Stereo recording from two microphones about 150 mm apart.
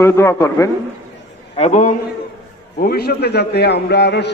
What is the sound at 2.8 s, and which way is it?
A man's voice, 85° left.